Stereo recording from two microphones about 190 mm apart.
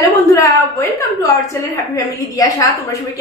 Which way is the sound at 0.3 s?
15° left (ahead or behind).